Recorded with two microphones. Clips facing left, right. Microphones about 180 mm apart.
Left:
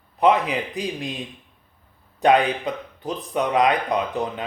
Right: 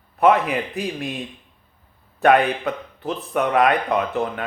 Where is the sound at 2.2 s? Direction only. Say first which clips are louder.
Right 1 dB; 15° left (ahead or behind).